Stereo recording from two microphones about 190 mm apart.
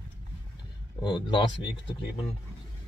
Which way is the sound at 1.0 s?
25° left (ahead or behind).